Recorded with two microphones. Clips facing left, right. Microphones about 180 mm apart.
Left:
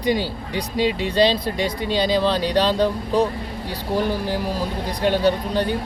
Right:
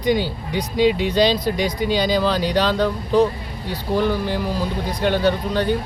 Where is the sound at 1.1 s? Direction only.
30° left (ahead or behind).